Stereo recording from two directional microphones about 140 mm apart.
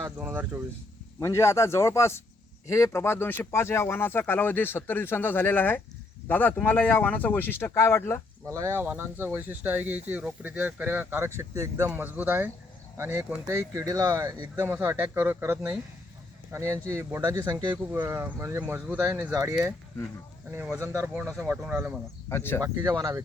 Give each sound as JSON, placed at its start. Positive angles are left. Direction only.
{"t": 0.0, "sound": "speech", "side_deg": -15}
{"t": 1.2, "sound": "speech", "side_deg": 20}
{"t": 8.4, "sound": "speech", "side_deg": -20}
{"t": 14.8, "sound": "speech", "side_deg": -15}
{"t": 17.9, "sound": "speech", "side_deg": -15}
{"t": 22.3, "sound": "speech", "side_deg": 15}
{"t": 22.6, "sound": "speech", "side_deg": -25}